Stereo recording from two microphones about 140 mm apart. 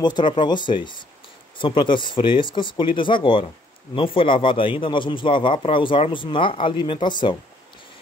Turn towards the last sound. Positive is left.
turn(degrees=35)  # may be behind; listen again after turning